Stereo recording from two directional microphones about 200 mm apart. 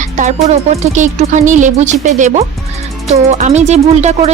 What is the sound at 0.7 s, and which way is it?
Speech, 35° right (ahead or behind).